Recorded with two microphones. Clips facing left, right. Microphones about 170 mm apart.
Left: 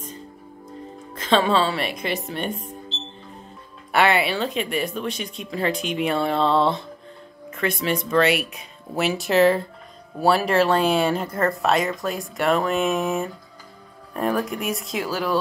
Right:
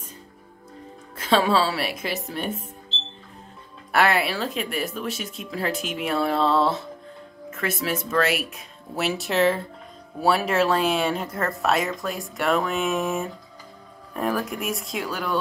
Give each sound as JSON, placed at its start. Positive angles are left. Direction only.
{"t": 1.1, "sound": "speech", "side_deg": -10}
{"t": 3.9, "sound": "speech", "side_deg": 0}